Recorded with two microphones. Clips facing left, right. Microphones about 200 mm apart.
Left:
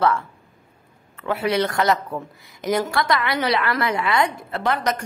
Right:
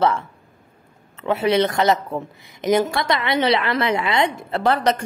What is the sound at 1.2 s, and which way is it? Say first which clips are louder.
A woman's voice: right 3 dB; 25° right (ahead or behind).